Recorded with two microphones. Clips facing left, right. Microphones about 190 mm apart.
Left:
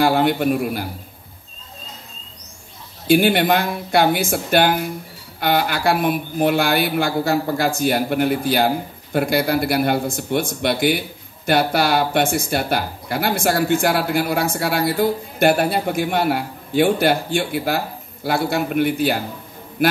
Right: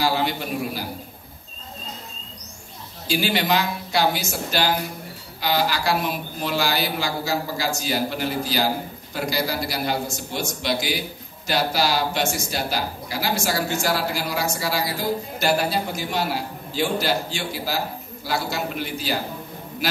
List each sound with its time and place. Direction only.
0.0 s speech: 55° left (ahead or behind)
3.1 s speech: 55° left (ahead or behind)